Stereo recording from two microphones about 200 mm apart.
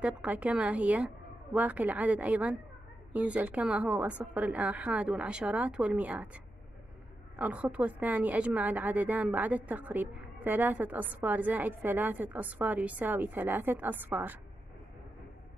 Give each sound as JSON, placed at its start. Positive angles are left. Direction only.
{"t": 0.0, "sound": "a woman's voice", "side_deg": -5}